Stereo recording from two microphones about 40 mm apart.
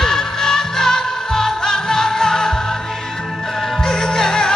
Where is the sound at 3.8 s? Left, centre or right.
Centre.